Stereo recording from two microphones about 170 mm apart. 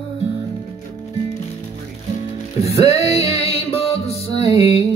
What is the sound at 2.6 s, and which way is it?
Music, 20° right (ahead or behind).